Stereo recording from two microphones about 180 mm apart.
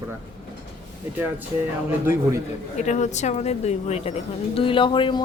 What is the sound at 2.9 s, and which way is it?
A woman's voice, 40° left (ahead or behind).